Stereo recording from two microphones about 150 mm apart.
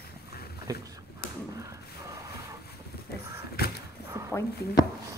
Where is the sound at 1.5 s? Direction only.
20° right (ahead or behind).